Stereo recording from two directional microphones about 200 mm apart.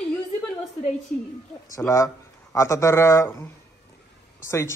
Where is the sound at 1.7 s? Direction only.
15° left (ahead or behind).